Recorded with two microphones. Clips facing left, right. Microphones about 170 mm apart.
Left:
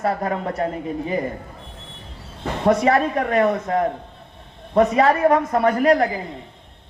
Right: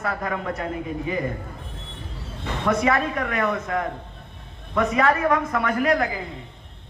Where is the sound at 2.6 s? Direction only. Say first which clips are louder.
Left 5 dB; 35° left (ahead or behind).